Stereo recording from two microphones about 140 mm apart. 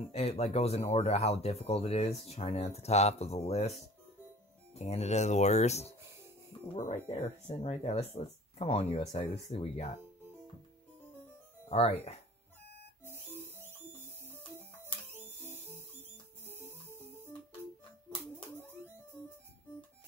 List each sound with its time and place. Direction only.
0.0 s speech: 45° left (ahead or behind)
4.7 s speech: 50° left (ahead or behind)
11.7 s speech: 45° left (ahead or behind)
13.0 s music: 15° right (ahead or behind)
15.1 s a sound: 15° right (ahead or behind)